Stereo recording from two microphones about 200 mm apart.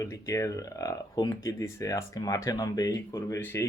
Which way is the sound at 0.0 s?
15° left (ahead or behind).